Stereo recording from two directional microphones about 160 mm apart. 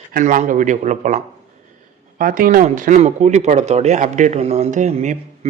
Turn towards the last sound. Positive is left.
turn(degrees=-50)  # may be behind; listen again after turning